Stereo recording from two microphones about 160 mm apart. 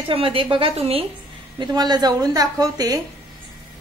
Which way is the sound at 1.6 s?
25° right (ahead or behind).